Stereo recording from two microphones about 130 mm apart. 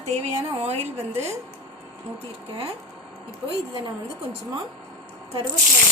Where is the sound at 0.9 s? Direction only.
20° right (ahead or behind).